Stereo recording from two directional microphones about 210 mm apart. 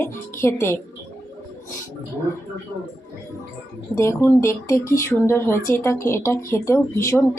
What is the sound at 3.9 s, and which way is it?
Speech, 15° left (ahead or behind).